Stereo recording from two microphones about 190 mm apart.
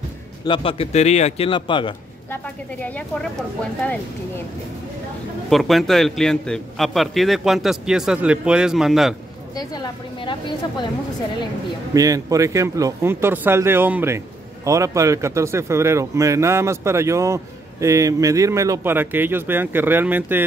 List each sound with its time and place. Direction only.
0.5 s a man's voice: 30° left (ahead or behind)
2.3 s speech: 10° left (ahead or behind)
5.5 s a man's voice: centre (ahead or behind)
9.6 s a man's voice: 20° left (ahead or behind)
11.9 s speech: 20° right (ahead or behind)